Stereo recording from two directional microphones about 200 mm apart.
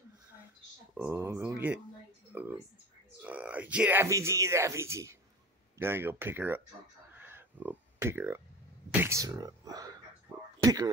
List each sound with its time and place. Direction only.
0.9 s speech: 10° right (ahead or behind)
7.2 s a sound: 10° right (ahead or behind)
9.0 s speech: 15° right (ahead or behind)